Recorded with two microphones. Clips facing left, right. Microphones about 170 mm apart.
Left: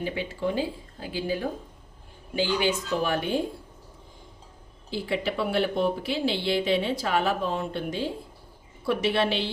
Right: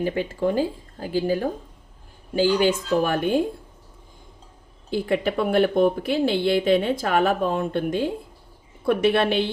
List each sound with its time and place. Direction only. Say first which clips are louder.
0.0 s speech: right 6 dB; 45° right (ahead or behind)
4.9 s a woman's voice: right 6 dB; 50° right (ahead or behind)